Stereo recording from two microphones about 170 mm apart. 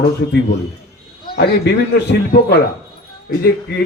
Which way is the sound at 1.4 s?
75° left (ahead or behind).